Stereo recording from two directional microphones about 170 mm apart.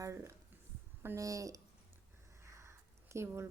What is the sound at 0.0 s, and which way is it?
A woman's voice, 15° right (ahead or behind).